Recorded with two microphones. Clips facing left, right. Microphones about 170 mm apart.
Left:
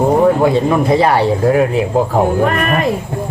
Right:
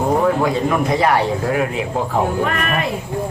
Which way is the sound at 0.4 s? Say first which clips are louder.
Left 5 dB; 30° left (ahead or behind).